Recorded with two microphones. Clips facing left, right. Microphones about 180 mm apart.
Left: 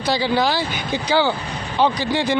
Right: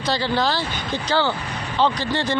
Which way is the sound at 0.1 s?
10° left (ahead or behind).